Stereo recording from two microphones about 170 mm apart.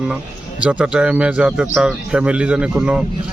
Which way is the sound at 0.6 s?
5° right (ahead or behind).